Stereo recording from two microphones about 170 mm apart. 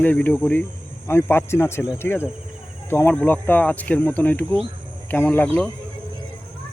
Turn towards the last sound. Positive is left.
turn(degrees=10)  # may be behind; listen again after turning